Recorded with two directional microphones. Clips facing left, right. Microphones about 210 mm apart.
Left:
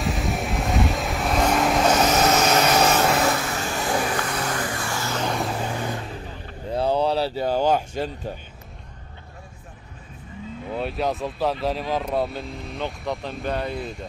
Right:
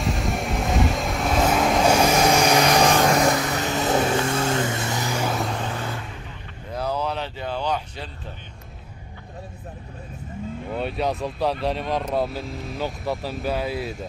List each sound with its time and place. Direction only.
0.0 s vehicle: centre (ahead or behind)
6.7 s a sound: 30° left (ahead or behind); by 8.1 s 45° left (ahead or behind)
10.7 s speech: centre (ahead or behind)